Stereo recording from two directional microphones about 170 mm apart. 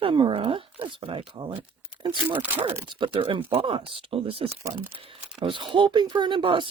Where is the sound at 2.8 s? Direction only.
30° right (ahead or behind).